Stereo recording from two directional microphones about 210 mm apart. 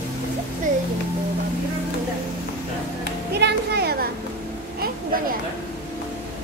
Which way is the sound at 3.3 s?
50° right (ahead or behind).